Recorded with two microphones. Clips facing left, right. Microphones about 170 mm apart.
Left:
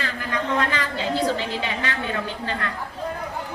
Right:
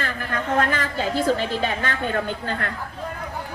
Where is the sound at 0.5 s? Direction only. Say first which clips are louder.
Right 4 dB; 45° right (ahead or behind).